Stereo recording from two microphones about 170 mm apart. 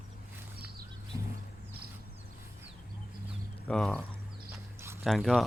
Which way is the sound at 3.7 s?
5° left (ahead or behind).